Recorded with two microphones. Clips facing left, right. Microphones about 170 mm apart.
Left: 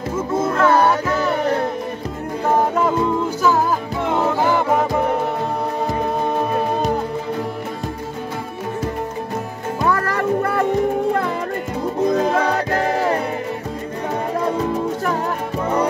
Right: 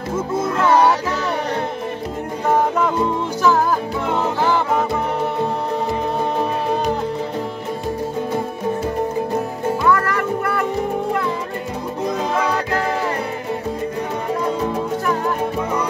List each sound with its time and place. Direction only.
9.8 s music: 30° left (ahead or behind)